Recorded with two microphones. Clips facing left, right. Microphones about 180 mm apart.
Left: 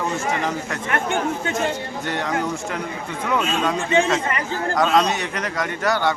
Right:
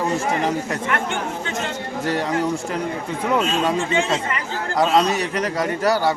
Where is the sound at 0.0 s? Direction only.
35° right (ahead or behind).